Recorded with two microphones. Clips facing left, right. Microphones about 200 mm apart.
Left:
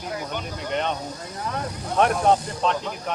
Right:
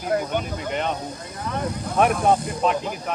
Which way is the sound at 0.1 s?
50° right (ahead or behind).